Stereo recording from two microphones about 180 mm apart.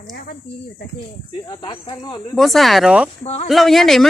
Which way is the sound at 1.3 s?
25° left (ahead or behind).